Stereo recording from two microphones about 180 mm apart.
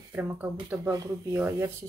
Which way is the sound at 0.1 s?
10° right (ahead or behind).